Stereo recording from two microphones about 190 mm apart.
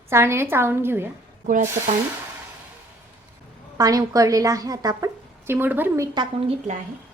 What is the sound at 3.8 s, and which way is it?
A woman's voice, 20° right (ahead or behind).